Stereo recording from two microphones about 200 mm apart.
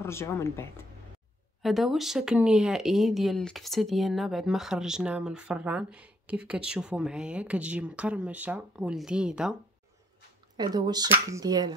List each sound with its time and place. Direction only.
0.0 s speech: 15° left (ahead or behind)
1.6 s speech: centre (ahead or behind)
10.5 s speech: 20° right (ahead or behind)